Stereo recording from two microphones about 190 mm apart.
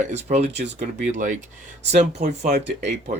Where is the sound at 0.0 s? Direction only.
40° right (ahead or behind).